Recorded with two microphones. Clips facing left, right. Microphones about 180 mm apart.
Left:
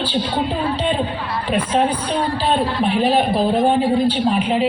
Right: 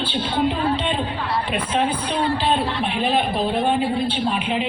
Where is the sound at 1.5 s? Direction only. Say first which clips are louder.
Left 6 dB; 35° left (ahead or behind).